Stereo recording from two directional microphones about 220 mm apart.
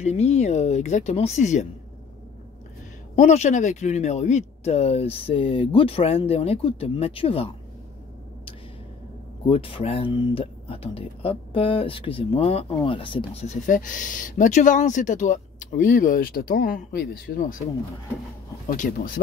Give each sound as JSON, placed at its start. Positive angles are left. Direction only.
{"t": 0.0, "sound": "speech", "side_deg": 30}
{"t": 3.2, "sound": "speech", "side_deg": 30}
{"t": 9.5, "sound": "speech", "side_deg": 25}
{"t": 18.7, "sound": "speech", "side_deg": 40}